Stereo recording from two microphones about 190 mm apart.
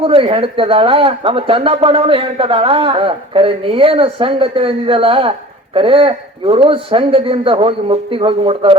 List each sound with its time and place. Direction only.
0.0 s speech: 30° right (ahead or behind)